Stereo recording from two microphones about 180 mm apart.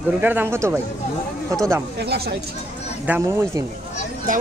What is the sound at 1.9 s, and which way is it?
Speech, 65° right (ahead or behind).